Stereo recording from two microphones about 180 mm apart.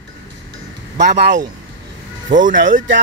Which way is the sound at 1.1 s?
70° right (ahead or behind).